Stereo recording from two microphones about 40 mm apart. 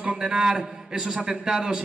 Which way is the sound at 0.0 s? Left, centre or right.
Right.